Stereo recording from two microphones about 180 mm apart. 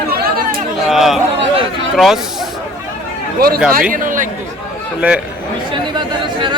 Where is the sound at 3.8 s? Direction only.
50° right (ahead or behind).